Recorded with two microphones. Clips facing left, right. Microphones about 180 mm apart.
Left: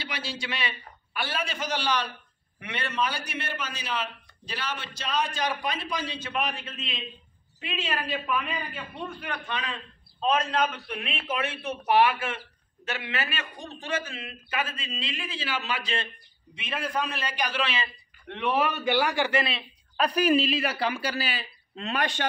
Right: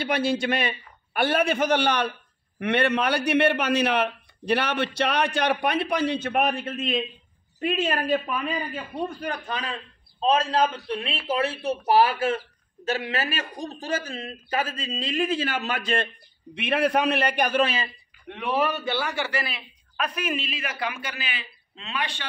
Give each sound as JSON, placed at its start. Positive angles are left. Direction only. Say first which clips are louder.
{"t": 0.0, "sound": "a man's voice", "louder": "right 12 dB", "side_deg": -55}
{"t": 16.5, "sound": "a man's voice", "louder": "right 8 dB", "side_deg": -65}
{"t": 18.8, "sound": "a man's voice", "louder": "left 3 dB", "side_deg": 15}